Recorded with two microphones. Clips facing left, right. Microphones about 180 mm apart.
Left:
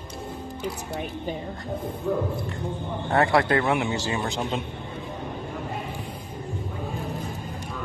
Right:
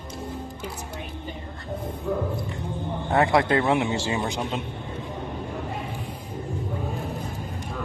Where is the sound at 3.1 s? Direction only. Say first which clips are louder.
Even; 20° right (ahead or behind).